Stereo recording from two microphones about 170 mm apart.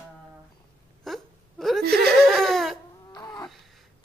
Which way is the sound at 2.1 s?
Centre (ahead or behind).